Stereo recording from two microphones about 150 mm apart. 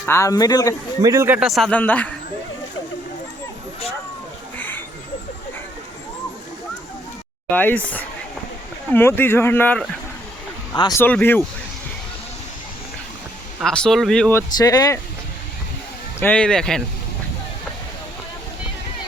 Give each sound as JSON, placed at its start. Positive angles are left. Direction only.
{"t": 0.0, "sound": "speech", "side_deg": 20}
{"t": 1.0, "sound": "speech", "side_deg": -20}
{"t": 1.4, "sound": "speech", "side_deg": 0}
{"t": 1.7, "sound": "speech", "side_deg": 10}
{"t": 4.5, "sound": "a sound", "side_deg": 10}
{"t": 7.5, "sound": "speech", "side_deg": 10}
{"t": 10.9, "sound": "speech", "side_deg": 15}
{"t": 13.6, "sound": "speech", "side_deg": 5}
{"t": 14.3, "sound": "speech", "side_deg": 20}
{"t": 16.2, "sound": "speech", "side_deg": 5}